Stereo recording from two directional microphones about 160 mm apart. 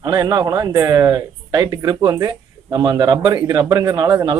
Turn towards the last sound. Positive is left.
turn(degrees=-25)  # may be behind; listen again after turning